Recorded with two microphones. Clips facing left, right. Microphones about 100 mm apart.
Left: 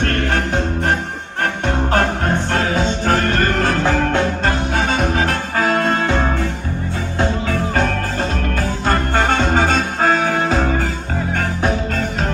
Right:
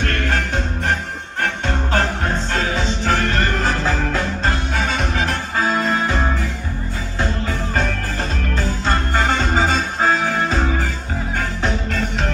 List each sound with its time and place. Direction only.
0.0 s music: 45° left (ahead or behind)
1.4 s music: 45° left (ahead or behind)
4.7 s music: 45° left (ahead or behind)
5.6 s music: 60° left (ahead or behind)
7.5 s music: 50° left (ahead or behind)